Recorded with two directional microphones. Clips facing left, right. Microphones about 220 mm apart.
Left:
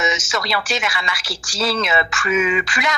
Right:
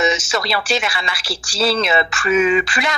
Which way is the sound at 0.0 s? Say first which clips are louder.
Right 4 dB; 30° right (ahead or behind).